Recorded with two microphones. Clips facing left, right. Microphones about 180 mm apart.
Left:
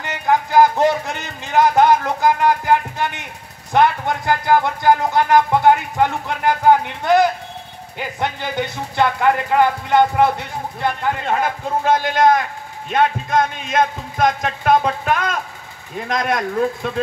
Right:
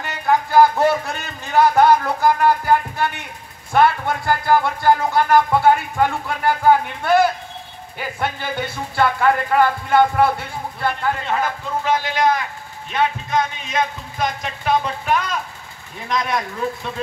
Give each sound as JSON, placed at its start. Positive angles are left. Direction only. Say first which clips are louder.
{"t": 0.0, "sound": "speech", "louder": "left 1 dB", "side_deg": 20}
{"t": 11.2, "sound": "speech", "louder": "left 2 dB", "side_deg": 50}